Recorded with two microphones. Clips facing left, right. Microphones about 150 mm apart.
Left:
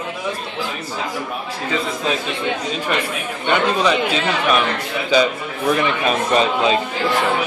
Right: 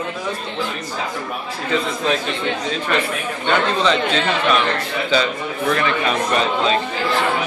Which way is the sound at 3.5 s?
10° left (ahead or behind).